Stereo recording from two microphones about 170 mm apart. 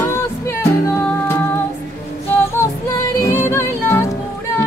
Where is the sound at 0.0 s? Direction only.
15° left (ahead or behind).